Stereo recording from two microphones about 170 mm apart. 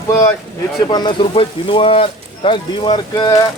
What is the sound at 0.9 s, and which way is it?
Speech, 25° left (ahead or behind).